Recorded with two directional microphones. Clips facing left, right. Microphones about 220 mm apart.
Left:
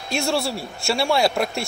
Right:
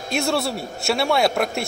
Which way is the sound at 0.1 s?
Centre (ahead or behind).